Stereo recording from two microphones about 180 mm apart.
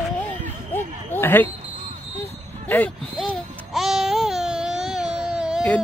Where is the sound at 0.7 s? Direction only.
10° left (ahead or behind).